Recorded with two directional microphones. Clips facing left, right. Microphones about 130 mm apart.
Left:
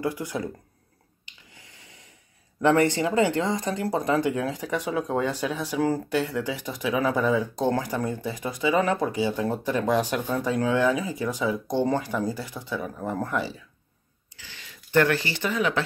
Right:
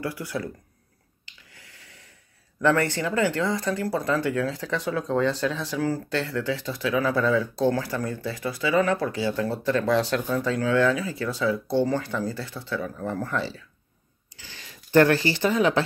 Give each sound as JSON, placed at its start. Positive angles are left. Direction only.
{"t": 0.0, "sound": "speech", "side_deg": 20}
{"t": 1.2, "sound": "a sound", "side_deg": 20}
{"t": 2.6, "sound": "speech", "side_deg": 20}
{"t": 14.3, "sound": "speech", "side_deg": -35}